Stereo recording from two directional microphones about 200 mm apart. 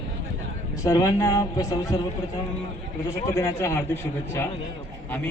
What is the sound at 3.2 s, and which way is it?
Speech, 15° left (ahead or behind).